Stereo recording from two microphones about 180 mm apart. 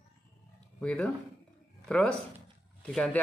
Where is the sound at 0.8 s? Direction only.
5° left (ahead or behind).